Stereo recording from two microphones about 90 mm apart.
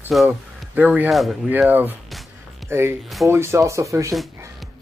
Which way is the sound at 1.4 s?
15° right (ahead or behind).